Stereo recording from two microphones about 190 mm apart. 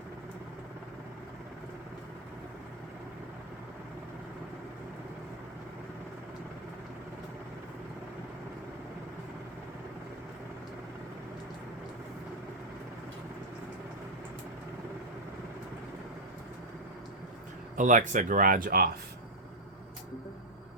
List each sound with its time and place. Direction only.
17.7 s speech: 40° right (ahead or behind)